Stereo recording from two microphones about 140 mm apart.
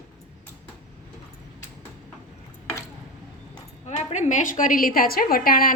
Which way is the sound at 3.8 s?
55° left (ahead or behind).